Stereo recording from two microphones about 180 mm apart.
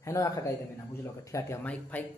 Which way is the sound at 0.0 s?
15° left (ahead or behind).